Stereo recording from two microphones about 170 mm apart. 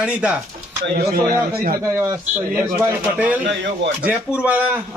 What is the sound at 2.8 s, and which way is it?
A man's voice, 15° right (ahead or behind).